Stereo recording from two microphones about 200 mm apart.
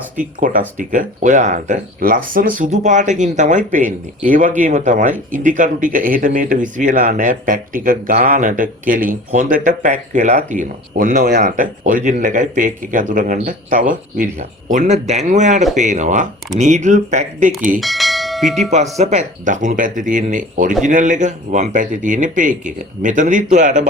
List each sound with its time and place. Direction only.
0.3 s speech: 40° right (ahead or behind)
17.7 s bell: centre (ahead or behind)
18.7 s speech: 35° right (ahead or behind)